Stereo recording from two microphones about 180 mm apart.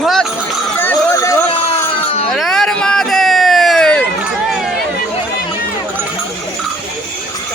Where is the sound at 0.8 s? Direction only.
15° left (ahead or behind).